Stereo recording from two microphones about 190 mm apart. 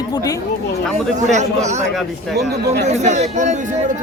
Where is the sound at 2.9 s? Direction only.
40° right (ahead or behind).